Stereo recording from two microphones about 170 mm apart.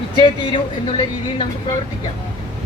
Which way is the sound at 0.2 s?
30° left (ahead or behind).